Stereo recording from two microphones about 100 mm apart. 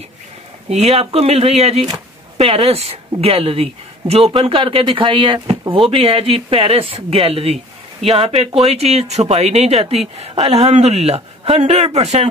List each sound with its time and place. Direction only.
0.7 s speech: 90° right
2.3 s speech: 75° right (ahead or behind)
4.3 s speech: 55° right (ahead or behind)
5.9 s speech: 65° right (ahead or behind)
8.0 s speech: 90° right